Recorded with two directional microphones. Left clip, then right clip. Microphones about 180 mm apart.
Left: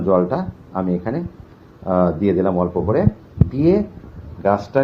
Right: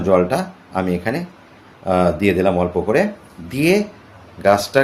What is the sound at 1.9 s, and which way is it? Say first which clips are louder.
Speech: right 2 dB; 35° right (ahead or behind).